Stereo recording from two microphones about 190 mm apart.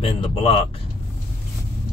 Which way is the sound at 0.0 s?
30° left (ahead or behind).